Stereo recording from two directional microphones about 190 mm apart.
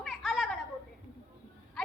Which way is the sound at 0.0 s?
Centre (ahead or behind).